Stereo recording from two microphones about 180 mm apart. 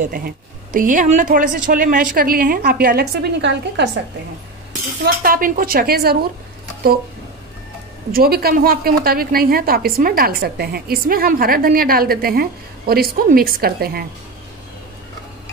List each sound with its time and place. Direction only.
0.0 s a woman's voice: 55° right (ahead or behind); by 3.9 s 75° right (ahead or behind)
5.0 s a woman's voice: 55° right (ahead or behind)
8.1 s a woman's voice: 55° right (ahead or behind)